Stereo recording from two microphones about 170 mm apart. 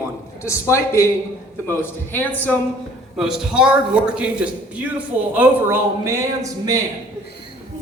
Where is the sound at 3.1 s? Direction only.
5° right (ahead or behind); by 6.8 s 20° right (ahead or behind).